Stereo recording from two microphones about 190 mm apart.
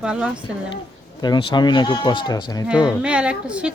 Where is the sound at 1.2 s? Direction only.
20° left (ahead or behind).